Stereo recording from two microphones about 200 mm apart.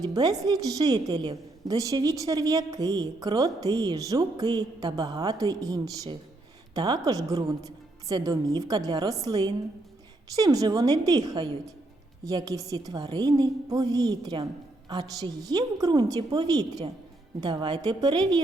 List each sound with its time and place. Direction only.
0.0 s a woman's voice: 20° right (ahead or behind)